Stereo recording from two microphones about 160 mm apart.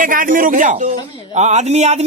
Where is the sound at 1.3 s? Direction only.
45° right (ahead or behind).